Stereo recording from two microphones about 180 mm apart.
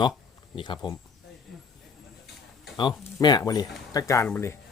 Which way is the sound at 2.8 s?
25° left (ahead or behind).